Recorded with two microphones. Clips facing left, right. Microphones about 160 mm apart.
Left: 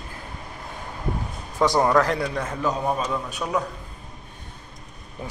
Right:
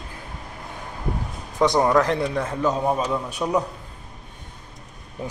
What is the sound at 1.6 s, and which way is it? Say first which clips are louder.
Speech: right 1 dB; 15° right (ahead or behind).